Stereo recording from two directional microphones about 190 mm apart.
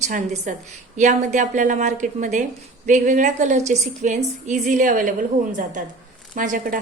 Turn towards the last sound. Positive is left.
turn(degrees=-45)  # may be behind; listen again after turning